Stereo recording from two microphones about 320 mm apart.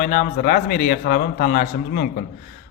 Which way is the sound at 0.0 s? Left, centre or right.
Left.